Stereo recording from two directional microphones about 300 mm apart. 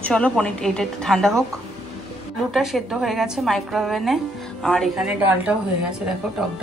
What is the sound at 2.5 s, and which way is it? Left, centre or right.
A woman's voice, centre.